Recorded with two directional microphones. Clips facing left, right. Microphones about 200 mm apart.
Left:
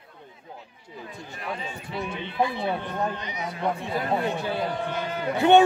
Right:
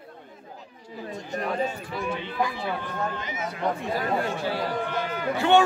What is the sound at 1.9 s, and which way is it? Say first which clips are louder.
A man's voice: left 2 dB; 20° left (ahead or behind).